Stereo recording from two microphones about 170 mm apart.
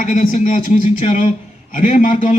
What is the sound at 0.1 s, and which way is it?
A man's voice, 45° left (ahead or behind).